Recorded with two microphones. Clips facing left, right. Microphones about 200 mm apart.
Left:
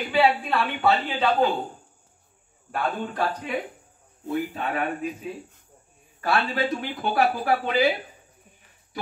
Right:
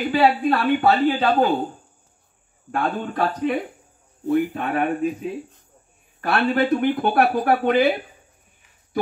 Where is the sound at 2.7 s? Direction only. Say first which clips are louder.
Right 3 dB; 55° right (ahead or behind).